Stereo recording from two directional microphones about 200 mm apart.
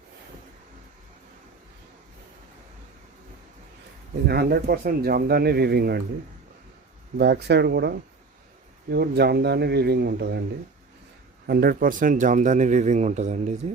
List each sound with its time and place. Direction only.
4.3 s speech: 50° right (ahead or behind)
7.2 s speech: 55° right (ahead or behind)
11.4 s speech: 50° right (ahead or behind)